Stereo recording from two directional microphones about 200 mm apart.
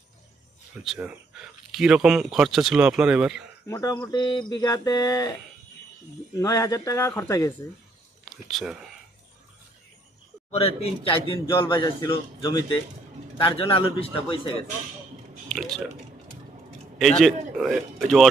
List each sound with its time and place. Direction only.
0.9 s speech: 5° right (ahead or behind)
3.7 s speech: 15° left (ahead or behind)
6.4 s speech: 15° left (ahead or behind)
8.2 s speech: centre (ahead or behind)
10.5 s a man's voice: 30° left (ahead or behind)
15.4 s speech: 5° left (ahead or behind)
17.0 s speech: centre (ahead or behind)